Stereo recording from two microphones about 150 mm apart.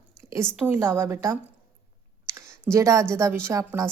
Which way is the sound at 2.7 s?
20° right (ahead or behind).